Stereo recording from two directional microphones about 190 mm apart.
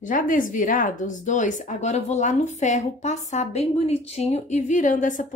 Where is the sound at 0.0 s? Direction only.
45° left (ahead or behind).